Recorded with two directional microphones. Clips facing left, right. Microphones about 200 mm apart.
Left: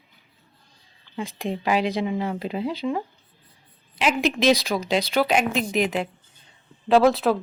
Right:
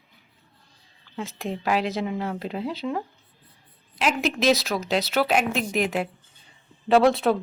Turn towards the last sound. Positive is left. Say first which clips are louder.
# left 1 dB
turn(degrees=0)  # may be behind; listen again after turning